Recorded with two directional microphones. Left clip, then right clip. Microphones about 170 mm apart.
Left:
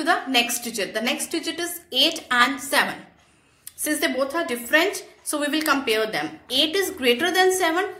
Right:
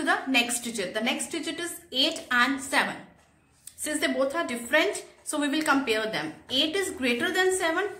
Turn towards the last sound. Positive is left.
turn(degrees=15)  # may be behind; listen again after turning